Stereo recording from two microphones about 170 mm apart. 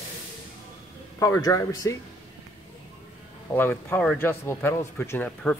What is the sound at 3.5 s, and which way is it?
Speech, 10° left (ahead or behind).